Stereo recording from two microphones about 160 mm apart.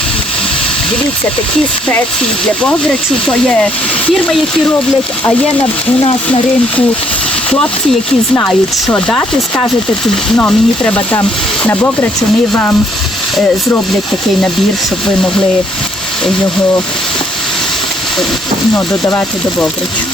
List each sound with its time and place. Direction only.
2.6 s speech: 5° left (ahead or behind)
8.4 s speech: 10° left (ahead or behind)
10.3 s speech: 10° left (ahead or behind)
18.7 s speech: 15° left (ahead or behind)